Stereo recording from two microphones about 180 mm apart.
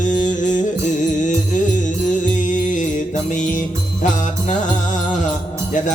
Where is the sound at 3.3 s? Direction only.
45° left (ahead or behind).